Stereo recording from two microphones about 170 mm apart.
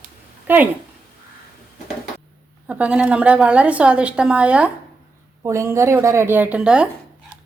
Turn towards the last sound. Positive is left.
turn(degrees=-5)  # may be behind; listen again after turning